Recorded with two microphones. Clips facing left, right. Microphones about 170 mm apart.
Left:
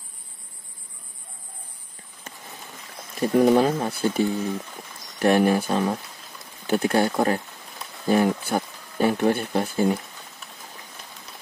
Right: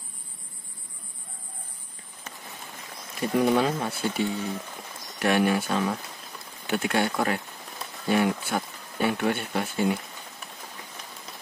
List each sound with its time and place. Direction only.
3.2 s speech: 45° left (ahead or behind)